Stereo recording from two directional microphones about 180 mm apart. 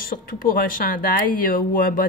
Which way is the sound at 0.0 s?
50° left (ahead or behind).